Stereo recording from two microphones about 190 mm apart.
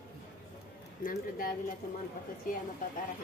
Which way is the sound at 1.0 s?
45° left (ahead or behind).